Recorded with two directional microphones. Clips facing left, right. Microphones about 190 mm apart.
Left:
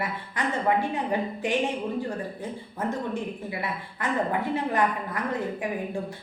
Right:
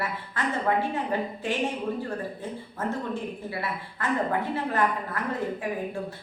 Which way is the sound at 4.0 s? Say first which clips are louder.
Even; 15° left (ahead or behind).